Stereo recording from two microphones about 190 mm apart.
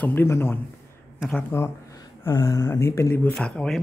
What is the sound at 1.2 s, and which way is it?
Speech, centre (ahead or behind).